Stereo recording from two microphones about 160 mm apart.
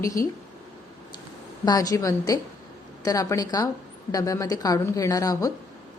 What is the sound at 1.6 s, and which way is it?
A woman's voice, 25° left (ahead or behind).